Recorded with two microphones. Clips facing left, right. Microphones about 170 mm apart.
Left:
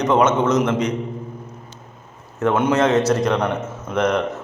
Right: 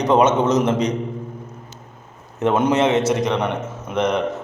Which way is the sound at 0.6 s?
20° right (ahead or behind).